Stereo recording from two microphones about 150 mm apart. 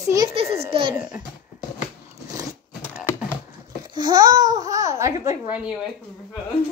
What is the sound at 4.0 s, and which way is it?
A child's voice, 30° right (ahead or behind).